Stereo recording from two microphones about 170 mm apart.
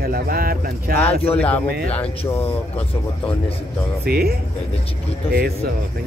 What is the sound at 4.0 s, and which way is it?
Speech, 65° right (ahead or behind).